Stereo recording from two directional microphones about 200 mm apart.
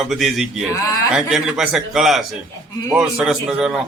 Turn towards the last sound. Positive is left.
turn(degrees=0)  # may be behind; listen again after turning